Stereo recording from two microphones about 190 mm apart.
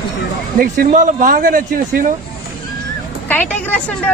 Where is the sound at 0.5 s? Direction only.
50° right (ahead or behind).